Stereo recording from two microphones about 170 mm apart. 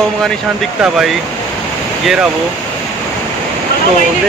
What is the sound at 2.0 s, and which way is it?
Speech, 5° right (ahead or behind).